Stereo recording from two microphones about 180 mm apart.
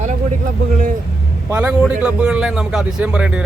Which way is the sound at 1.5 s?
10° right (ahead or behind).